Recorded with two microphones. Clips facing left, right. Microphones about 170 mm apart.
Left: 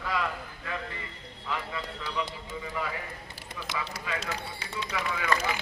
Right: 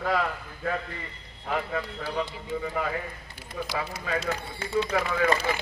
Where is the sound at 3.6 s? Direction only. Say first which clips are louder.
Right 7 dB; 40° right (ahead or behind).